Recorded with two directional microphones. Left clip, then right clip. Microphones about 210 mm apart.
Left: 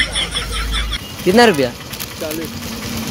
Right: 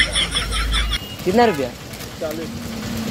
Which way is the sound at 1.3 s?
15° left (ahead or behind).